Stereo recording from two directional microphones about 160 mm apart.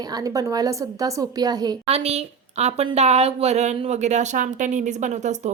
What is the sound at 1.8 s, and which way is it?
A woman's voice, 40° right (ahead or behind).